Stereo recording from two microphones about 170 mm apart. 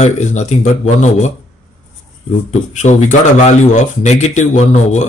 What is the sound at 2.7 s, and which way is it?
Speech, 45° left (ahead or behind).